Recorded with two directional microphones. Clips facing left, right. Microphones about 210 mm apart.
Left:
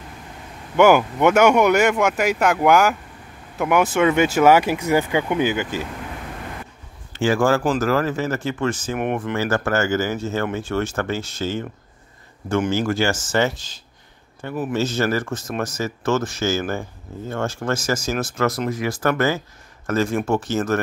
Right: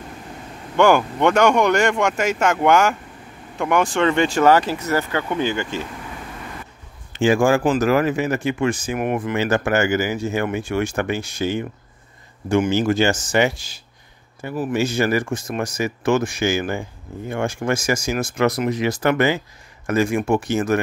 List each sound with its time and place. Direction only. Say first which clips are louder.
0.7 s speech: left 1 dB; 5° left (ahead or behind)
7.1 s a man's voice: right 2 dB; 15° right (ahead or behind)
8.9 s speech: right 1 dB; centre (ahead or behind)
9.3 s speech: right 3 dB; 20° right (ahead or behind)